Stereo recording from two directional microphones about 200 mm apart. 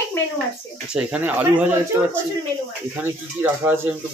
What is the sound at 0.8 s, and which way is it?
Speech, 5° right (ahead or behind).